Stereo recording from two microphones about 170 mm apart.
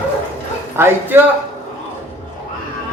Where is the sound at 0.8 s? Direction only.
10° right (ahead or behind).